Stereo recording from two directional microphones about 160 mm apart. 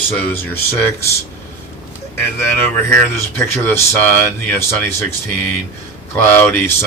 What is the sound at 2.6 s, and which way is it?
Speech, 15° left (ahead or behind).